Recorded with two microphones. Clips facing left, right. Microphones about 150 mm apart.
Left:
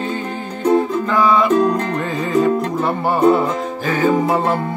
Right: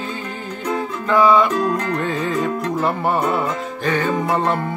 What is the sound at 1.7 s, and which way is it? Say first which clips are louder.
Music: left 2 dB; 30° left (ahead or behind).